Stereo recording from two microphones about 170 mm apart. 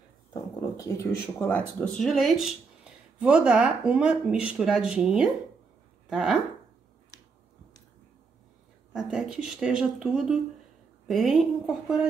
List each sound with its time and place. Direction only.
0.3 s a sound: 20° left (ahead or behind)
1.5 s speech: 5° left (ahead or behind)
8.9 s speech: 5° right (ahead or behind)